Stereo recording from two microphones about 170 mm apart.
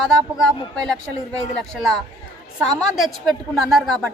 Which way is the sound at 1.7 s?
Centre (ahead or behind).